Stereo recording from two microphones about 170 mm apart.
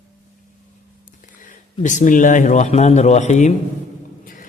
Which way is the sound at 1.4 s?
45° left (ahead or behind).